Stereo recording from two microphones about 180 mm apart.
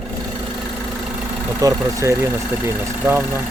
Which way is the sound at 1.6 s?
15° right (ahead or behind).